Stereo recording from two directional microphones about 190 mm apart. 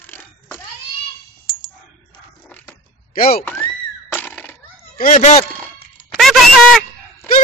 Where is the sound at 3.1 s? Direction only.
50° left (ahead or behind).